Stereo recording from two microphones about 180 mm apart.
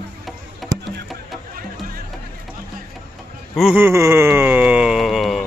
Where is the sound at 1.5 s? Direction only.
50° right (ahead or behind).